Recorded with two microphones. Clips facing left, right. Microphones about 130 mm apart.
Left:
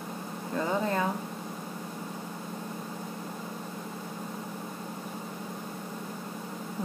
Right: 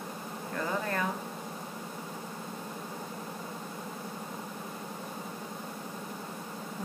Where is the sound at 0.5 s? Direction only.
20° left (ahead or behind).